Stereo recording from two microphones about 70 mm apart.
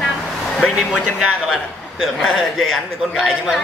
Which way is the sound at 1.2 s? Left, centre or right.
Centre.